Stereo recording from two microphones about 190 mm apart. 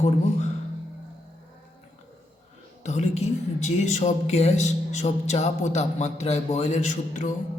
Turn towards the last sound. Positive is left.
turn(degrees=40)  # may be behind; listen again after turning